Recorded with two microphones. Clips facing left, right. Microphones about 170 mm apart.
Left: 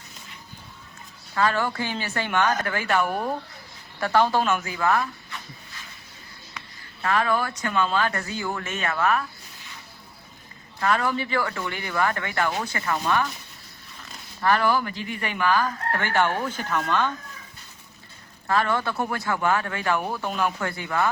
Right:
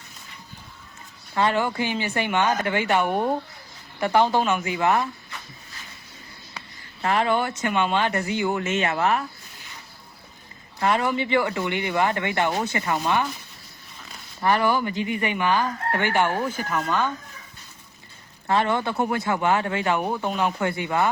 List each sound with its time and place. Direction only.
1.4 s speech: 20° right (ahead or behind)
7.0 s speech: 25° right (ahead or behind)
10.8 s speech: 20° right (ahead or behind)
14.4 s speech: 15° right (ahead or behind)
18.4 s speech: 20° right (ahead or behind)